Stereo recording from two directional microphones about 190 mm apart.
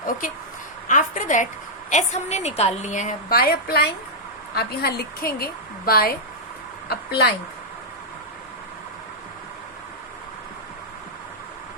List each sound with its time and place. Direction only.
0.9 s a woman's voice: 45° left (ahead or behind)